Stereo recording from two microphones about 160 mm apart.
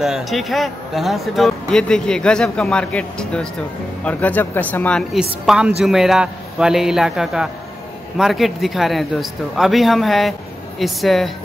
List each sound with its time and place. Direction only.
0.0 s speech: centre (ahead or behind)
5.4 s speech: 5° right (ahead or behind)